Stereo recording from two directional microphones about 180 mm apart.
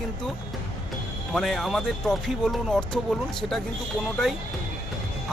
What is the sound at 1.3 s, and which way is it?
Speech, centre (ahead or behind).